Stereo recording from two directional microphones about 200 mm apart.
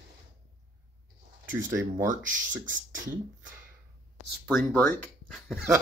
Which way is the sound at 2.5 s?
40° right (ahead or behind).